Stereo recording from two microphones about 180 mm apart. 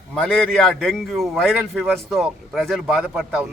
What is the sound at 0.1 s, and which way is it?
A man's voice, 5° left (ahead or behind).